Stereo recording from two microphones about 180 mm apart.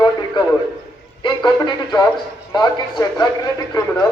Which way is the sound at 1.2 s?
25° left (ahead or behind).